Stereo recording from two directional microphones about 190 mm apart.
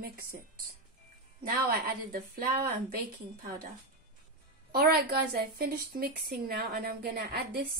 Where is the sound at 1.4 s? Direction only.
50° right (ahead or behind).